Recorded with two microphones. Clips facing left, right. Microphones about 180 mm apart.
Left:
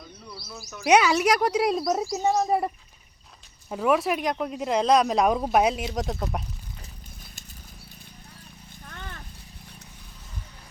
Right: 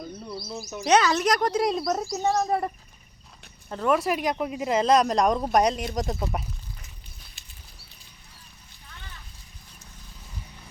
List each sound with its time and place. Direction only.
0.3 s speech: 25° right (ahead or behind)
0.9 s speech: 10° left (ahead or behind)
8.9 s horse: 55° left (ahead or behind)